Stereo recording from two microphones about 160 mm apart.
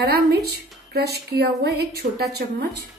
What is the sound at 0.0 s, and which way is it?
Speech, 80° right.